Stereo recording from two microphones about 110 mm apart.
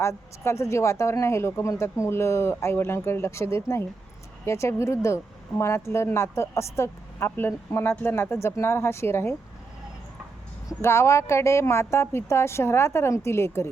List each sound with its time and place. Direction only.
0.0 s a woman's voice: 25° left (ahead or behind)
10.8 s a woman's voice: 25° left (ahead or behind)